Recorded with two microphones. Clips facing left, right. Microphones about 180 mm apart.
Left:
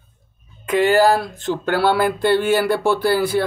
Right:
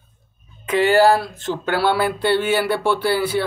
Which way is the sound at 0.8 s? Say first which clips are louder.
Right 1 dB; 45° left (ahead or behind).